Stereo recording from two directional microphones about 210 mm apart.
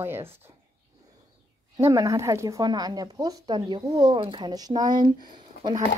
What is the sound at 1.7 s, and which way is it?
Speech, 15° right (ahead or behind).